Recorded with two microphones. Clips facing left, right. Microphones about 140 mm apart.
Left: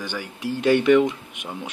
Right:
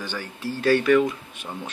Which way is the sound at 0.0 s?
15° left (ahead or behind).